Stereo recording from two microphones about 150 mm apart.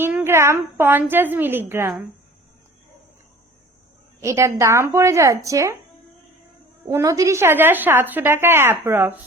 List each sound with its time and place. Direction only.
0.0 s a woman's voice: 15° right (ahead or behind)
4.2 s speech: 20° right (ahead or behind)
6.8 s a woman's voice: 20° right (ahead or behind)